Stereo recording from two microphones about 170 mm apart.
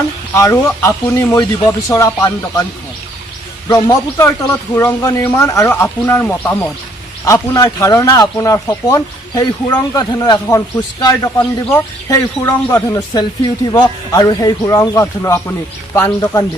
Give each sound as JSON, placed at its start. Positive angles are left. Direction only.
{"t": 0.3, "sound": "a man's voice", "side_deg": 15}
{"t": 3.7, "sound": "a man's voice", "side_deg": 20}